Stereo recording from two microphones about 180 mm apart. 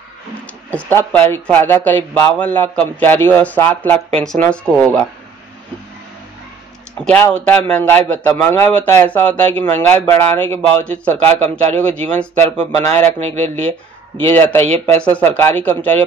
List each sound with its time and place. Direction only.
0.3 s speech: 10° left (ahead or behind)
4.6 s speech: 15° right (ahead or behind)
7.0 s speech: 5° left (ahead or behind)